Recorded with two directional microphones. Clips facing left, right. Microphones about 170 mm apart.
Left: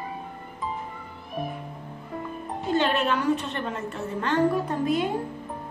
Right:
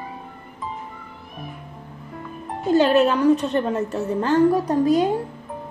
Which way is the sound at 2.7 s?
40° right (ahead or behind).